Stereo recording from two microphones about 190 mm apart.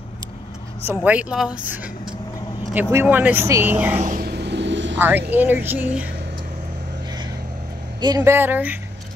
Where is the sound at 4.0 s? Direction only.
45° right (ahead or behind); by 5.0 s 70° right (ahead or behind).